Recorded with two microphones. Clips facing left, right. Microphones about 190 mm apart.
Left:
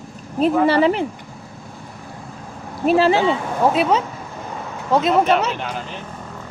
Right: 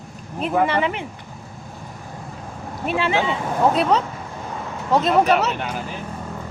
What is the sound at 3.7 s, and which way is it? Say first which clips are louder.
Speech: left 1 dB; centre (ahead or behind).